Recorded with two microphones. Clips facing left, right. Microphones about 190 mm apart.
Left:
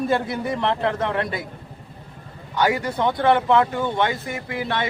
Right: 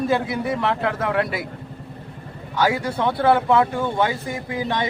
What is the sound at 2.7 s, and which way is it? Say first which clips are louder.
A man's voice: even; 10° right (ahead or behind).